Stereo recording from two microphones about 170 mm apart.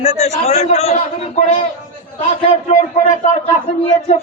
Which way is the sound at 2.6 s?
45° left (ahead or behind).